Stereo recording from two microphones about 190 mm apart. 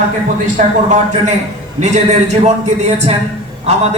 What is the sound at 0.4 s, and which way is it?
Speech, 40° right (ahead or behind).